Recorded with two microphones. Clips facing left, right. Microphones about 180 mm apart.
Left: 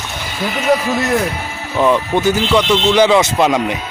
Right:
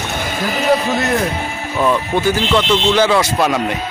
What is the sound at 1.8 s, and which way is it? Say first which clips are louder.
Speech: left 2 dB; 15° left (ahead or behind).